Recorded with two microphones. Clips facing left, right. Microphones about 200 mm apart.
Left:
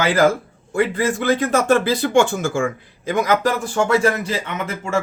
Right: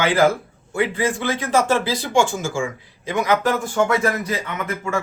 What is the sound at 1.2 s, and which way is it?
Speech, 55° left (ahead or behind).